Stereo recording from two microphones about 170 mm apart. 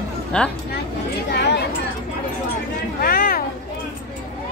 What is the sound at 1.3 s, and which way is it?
Chatter, 75° left (ahead or behind).